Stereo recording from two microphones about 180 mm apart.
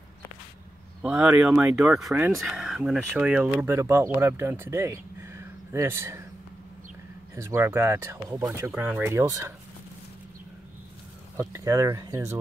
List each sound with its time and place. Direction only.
1.0 s speech: 5° right (ahead or behind)
3.6 s speech: 15° right (ahead or behind)
7.3 s speech: 15° right (ahead or behind)
11.3 s speech: 15° right (ahead or behind)